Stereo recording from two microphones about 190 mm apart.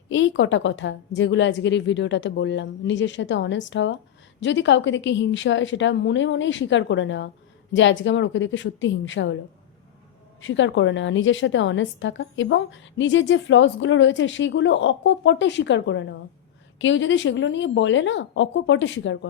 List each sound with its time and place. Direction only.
0.1 s a woman's voice: 80° left
10.4 s a woman's voice: 80° left